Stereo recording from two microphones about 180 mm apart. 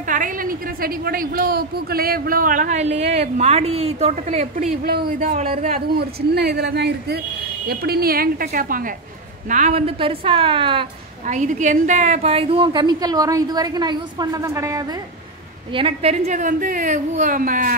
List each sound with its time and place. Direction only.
0.0 s a woman's voice: 45° right (ahead or behind)
4.8 s speech: 50° right (ahead or behind)
5.9 s speech: 65° right (ahead or behind)
9.5 s a woman's voice: 40° right (ahead or behind)
11.2 s a woman's voice: 45° right (ahead or behind); by 15.0 s 20° right (ahead or behind)
15.7 s a woman's voice: 30° right (ahead or behind); by 17.7 s 50° right (ahead or behind)